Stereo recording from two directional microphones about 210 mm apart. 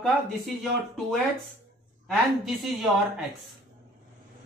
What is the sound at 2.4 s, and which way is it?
Speech, centre (ahead or behind).